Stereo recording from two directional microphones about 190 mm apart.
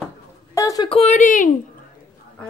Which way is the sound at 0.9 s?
35° left (ahead or behind).